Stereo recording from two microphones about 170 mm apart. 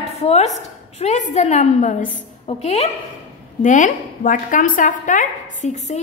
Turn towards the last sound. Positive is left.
turn(degrees=45)  # may be behind; listen again after turning